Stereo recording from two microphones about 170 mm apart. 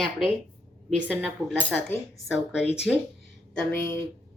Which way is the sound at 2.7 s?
5° right (ahead or behind).